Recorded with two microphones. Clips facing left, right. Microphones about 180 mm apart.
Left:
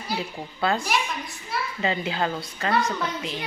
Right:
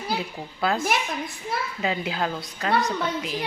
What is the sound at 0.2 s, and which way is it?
Speech, centre (ahead or behind).